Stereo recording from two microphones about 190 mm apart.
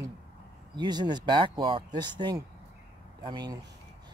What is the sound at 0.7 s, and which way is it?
Speech, 20° right (ahead or behind).